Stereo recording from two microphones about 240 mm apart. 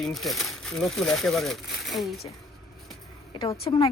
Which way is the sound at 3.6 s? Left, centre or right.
Left.